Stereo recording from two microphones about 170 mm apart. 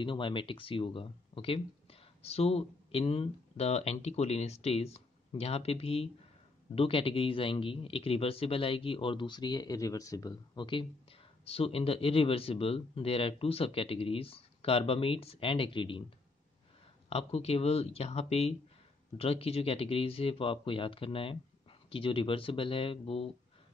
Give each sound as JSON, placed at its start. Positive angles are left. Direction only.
{"t": 0.0, "sound": "speech", "side_deg": 30}
{"t": 17.1, "sound": "speech", "side_deg": 35}